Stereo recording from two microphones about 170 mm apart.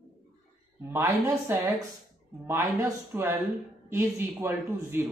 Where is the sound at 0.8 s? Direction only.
15° right (ahead or behind).